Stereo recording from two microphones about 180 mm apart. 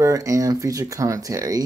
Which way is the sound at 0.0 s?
15° right (ahead or behind).